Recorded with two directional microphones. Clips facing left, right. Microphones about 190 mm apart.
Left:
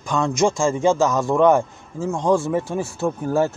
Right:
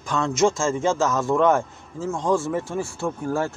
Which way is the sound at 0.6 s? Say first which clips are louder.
Left 4 dB; 15° left (ahead or behind).